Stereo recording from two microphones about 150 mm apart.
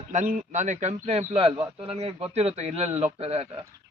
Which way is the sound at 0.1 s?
55° right (ahead or behind).